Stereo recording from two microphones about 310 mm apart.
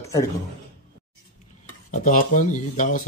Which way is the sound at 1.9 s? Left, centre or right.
Left.